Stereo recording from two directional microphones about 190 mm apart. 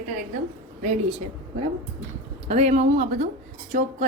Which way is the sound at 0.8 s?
40° right (ahead or behind).